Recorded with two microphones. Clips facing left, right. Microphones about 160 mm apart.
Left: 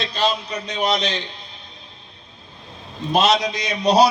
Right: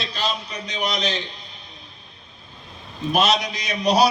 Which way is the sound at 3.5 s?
25° left (ahead or behind).